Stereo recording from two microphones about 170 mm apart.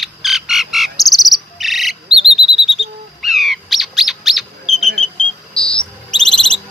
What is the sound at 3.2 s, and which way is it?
Bird, centre (ahead or behind).